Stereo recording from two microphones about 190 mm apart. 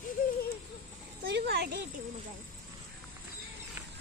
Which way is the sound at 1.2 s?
55° right (ahead or behind).